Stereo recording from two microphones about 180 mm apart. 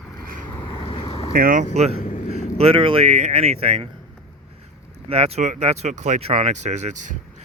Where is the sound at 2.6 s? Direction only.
30° right (ahead or behind).